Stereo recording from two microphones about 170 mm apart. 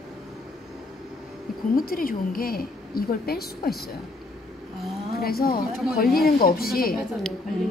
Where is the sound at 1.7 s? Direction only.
55° left (ahead or behind).